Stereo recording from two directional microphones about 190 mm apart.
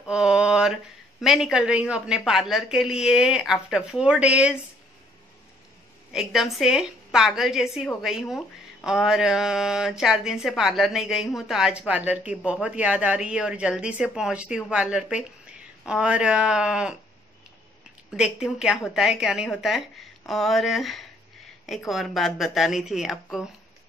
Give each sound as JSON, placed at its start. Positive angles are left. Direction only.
{"t": 0.1, "sound": "mantra", "side_deg": -5}
{"t": 1.2, "sound": "speech", "side_deg": 0}
{"t": 6.1, "sound": "speech", "side_deg": 0}
{"t": 18.1, "sound": "speech", "side_deg": -5}